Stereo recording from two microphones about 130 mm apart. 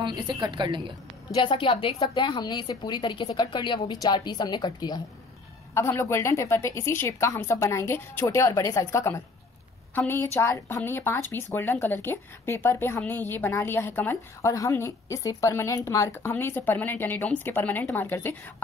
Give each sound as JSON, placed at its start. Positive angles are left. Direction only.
{"t": 0.0, "sound": "a woman's voice", "side_deg": -30}
{"t": 1.3, "sound": "a woman's voice", "side_deg": 40}
{"t": 5.8, "sound": "a woman's voice", "side_deg": 20}